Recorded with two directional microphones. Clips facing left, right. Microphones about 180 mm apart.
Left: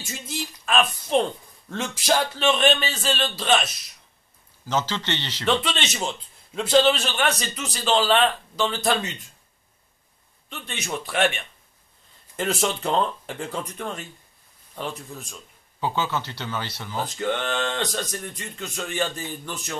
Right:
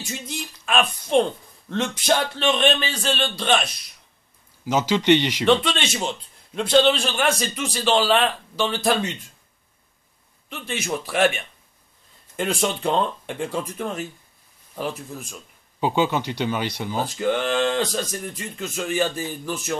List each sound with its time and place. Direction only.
0.1 s a man's voice: centre (ahead or behind)
4.6 s speech: 10° right (ahead or behind)
5.5 s a man's voice: centre (ahead or behind)
10.5 s a man's voice: centre (ahead or behind)
15.8 s speech: 15° right (ahead or behind)
17.0 s a man's voice: 5° right (ahead or behind)